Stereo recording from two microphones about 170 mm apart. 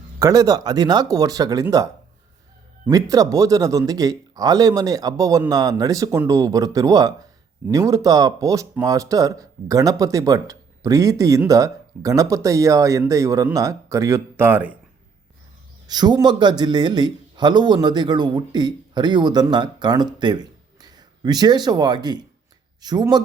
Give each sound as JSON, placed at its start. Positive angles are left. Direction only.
{"t": 0.2, "sound": "speech", "side_deg": -20}
{"t": 2.9, "sound": "speech", "side_deg": -20}
{"t": 15.9, "sound": "speech", "side_deg": -25}